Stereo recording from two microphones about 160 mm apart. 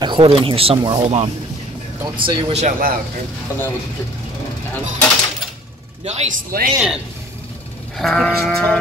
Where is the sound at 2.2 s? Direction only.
35° right (ahead or behind).